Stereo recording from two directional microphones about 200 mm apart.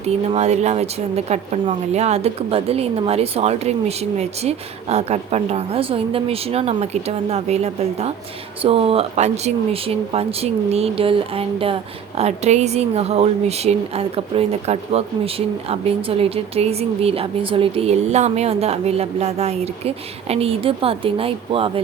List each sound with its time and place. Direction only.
0.3 s speech: 35° right (ahead or behind)